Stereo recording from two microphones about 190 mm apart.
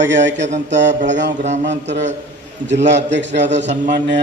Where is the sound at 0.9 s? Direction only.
40° right (ahead or behind).